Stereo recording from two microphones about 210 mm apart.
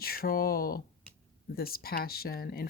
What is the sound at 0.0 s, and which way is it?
Speech, 45° left (ahead or behind).